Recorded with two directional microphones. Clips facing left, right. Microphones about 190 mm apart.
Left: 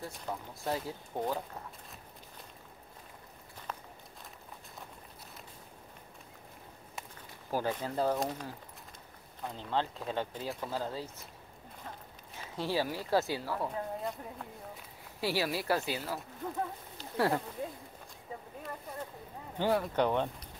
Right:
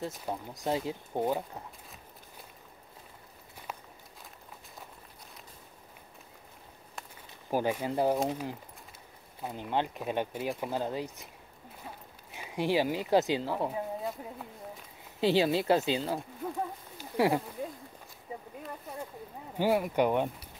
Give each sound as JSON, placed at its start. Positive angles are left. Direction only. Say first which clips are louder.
{"t": 0.3, "sound": "speech", "louder": "right 3 dB", "side_deg": -20}
{"t": 7.5, "sound": "speech", "louder": "right 4 dB", "side_deg": -15}
{"t": 12.4, "sound": "speech", "louder": "right 5 dB", "side_deg": -15}
{"t": 13.7, "sound": "speech", "louder": "right 2 dB", "side_deg": -5}
{"t": 15.1, "sound": "speech", "louder": "right 7 dB", "side_deg": -20}
{"t": 16.4, "sound": "speech", "louder": "right 2 dB", "side_deg": -10}
{"t": 19.5, "sound": "speech", "louder": "right 3 dB", "side_deg": -10}